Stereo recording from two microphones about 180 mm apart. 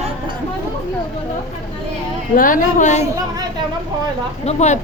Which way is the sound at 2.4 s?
50° left (ahead or behind).